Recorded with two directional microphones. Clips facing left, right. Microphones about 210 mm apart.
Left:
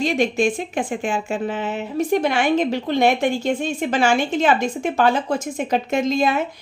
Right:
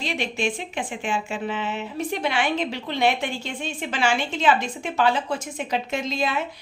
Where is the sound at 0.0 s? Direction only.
45° left (ahead or behind).